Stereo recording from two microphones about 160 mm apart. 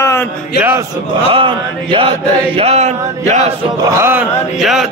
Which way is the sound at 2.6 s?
40° right (ahead or behind).